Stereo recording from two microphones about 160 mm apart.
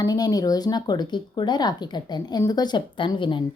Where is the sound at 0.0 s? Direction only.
25° left (ahead or behind).